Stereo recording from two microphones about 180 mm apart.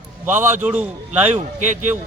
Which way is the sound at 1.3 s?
45° right (ahead or behind).